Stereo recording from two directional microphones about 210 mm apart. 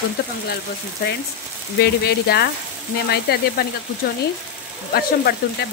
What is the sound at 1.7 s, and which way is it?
Speech, 50° left (ahead or behind).